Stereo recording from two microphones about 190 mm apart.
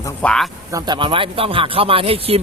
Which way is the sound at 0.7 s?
20° right (ahead or behind).